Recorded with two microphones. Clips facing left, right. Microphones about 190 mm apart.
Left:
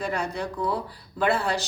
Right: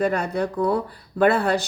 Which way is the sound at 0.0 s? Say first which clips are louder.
Right 6 dB; 55° right (ahead or behind).